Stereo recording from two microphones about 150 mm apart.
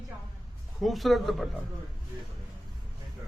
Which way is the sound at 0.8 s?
Centre (ahead or behind).